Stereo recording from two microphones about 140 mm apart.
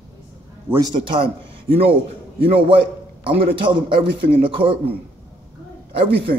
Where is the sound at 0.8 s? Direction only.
30° right (ahead or behind).